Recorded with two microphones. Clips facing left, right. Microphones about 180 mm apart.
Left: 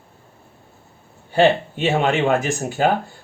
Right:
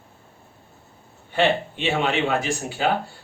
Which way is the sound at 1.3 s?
40° left (ahead or behind).